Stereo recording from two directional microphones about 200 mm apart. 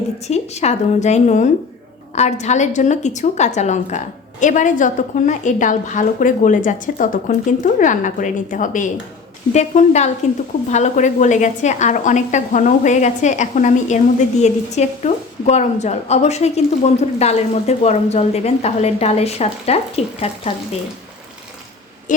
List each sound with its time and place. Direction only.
0.3 s a woman's voice: 35° left (ahead or behind)